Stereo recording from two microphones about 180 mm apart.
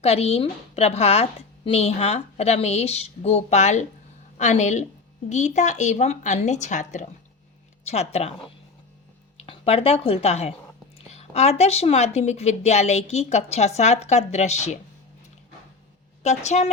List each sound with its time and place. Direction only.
0.0 s speech: 35° left (ahead or behind)
9.5 s speech: 35° left (ahead or behind)
16.2 s speech: 40° left (ahead or behind)